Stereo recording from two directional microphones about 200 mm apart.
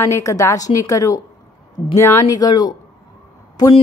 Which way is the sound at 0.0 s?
15° left (ahead or behind).